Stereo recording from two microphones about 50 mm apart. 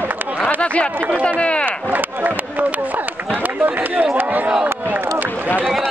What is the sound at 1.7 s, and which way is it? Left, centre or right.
Speech, right.